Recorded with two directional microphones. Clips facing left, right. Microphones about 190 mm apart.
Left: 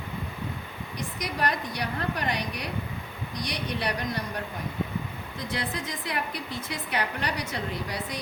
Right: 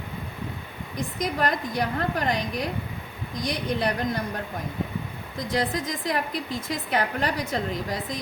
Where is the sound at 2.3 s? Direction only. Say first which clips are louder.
Right 4 dB; 90° right.